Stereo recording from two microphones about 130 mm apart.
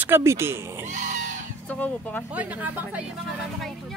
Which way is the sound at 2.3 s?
10° right (ahead or behind).